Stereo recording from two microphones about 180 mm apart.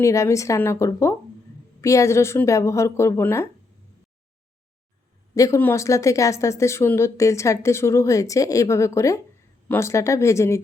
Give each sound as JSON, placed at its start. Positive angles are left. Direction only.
{"t": 0.0, "sound": "a woman's voice", "side_deg": 15}
{"t": 5.3, "sound": "a woman's voice", "side_deg": 15}